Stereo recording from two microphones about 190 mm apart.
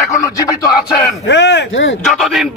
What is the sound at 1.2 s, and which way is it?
Speech, 65° left (ahead or behind).